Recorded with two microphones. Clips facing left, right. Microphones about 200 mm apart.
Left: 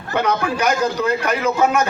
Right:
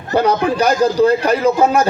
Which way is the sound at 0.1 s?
35° right (ahead or behind).